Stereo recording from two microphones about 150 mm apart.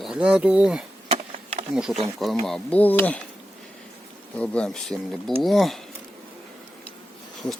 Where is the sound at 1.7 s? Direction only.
5° right (ahead or behind).